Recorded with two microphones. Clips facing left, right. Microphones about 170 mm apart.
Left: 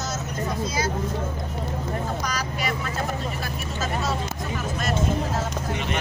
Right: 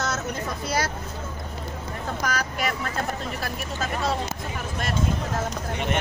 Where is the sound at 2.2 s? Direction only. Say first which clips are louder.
Right 1 dB; 55° right (ahead or behind).